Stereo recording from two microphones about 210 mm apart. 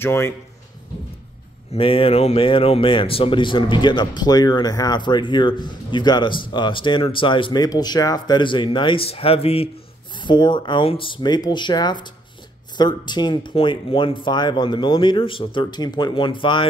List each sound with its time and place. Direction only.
0.0 s a man's voice: 10° left (ahead or behind)
1.7 s speech: 25° left (ahead or behind)